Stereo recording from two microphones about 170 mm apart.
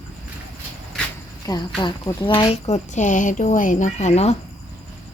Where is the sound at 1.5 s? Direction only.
25° left (ahead or behind).